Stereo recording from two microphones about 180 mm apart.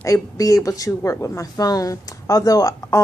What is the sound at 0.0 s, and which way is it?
Speech, 15° left (ahead or behind).